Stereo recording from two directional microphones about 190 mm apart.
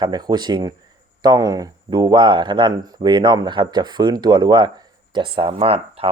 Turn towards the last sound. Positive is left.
turn(degrees=-30)  # may be behind; listen again after turning